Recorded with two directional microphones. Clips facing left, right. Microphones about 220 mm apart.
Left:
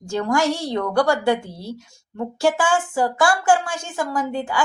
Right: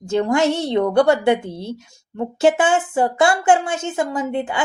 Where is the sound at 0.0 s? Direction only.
20° right (ahead or behind).